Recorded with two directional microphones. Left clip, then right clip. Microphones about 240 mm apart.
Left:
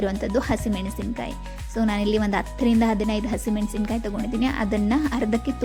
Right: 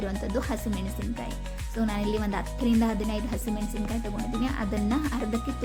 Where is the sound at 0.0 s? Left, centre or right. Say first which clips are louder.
Left 7 dB; left.